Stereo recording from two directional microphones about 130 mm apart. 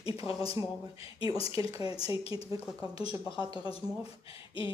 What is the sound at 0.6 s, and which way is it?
Speech, 25° right (ahead or behind).